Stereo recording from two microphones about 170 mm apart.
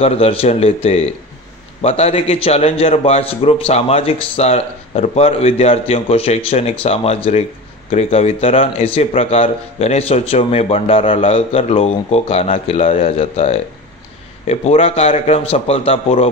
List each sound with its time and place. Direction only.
0.0 s a man's voice: 35° left (ahead or behind)